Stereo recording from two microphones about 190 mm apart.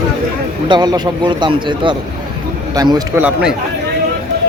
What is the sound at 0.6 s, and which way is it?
Speech, 20° right (ahead or behind).